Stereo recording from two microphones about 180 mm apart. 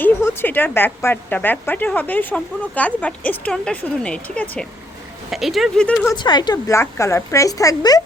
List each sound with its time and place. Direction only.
0.0 s a woman's voice: 10° left (ahead or behind)
6.1 s a woman's voice: 25° left (ahead or behind)